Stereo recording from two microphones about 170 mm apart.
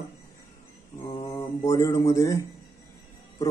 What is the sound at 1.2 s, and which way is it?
Mantra, 20° left (ahead or behind).